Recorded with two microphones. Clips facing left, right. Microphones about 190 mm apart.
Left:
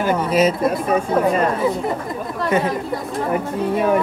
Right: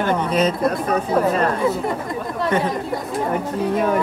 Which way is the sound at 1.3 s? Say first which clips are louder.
Left 1 dB; 10° left (ahead or behind).